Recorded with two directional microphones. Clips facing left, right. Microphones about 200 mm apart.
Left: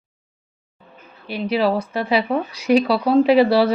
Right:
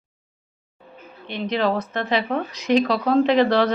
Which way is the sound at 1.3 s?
10° left (ahead or behind).